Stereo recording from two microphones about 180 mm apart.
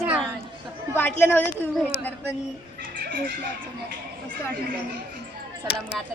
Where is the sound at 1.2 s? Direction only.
10° left (ahead or behind).